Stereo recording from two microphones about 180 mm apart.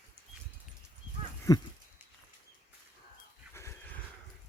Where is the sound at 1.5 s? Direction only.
20° left (ahead or behind).